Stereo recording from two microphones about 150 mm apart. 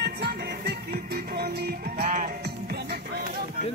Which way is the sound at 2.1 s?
80° right.